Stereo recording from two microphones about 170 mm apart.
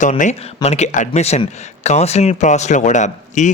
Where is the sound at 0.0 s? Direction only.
45° left (ahead or behind).